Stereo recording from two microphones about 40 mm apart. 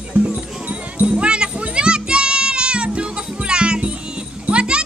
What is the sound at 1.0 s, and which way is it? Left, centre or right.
Music, right.